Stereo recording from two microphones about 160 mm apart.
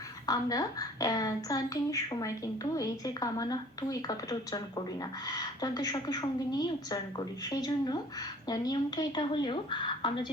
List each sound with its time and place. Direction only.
0.3 s a woman's voice: 20° left (ahead or behind)